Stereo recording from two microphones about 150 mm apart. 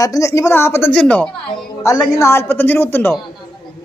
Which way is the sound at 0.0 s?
20° left (ahead or behind).